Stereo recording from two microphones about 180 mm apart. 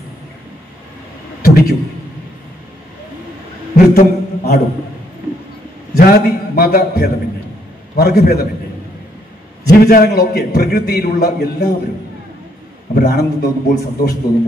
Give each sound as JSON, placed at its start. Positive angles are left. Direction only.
{"t": 1.4, "sound": "a man's voice", "side_deg": 55}
{"t": 3.7, "sound": "a sound", "side_deg": 55}
{"t": 5.9, "sound": "a man's voice", "side_deg": 55}
{"t": 9.7, "sound": "a man's voice", "side_deg": 55}
{"t": 12.9, "sound": "a man's voice", "side_deg": 60}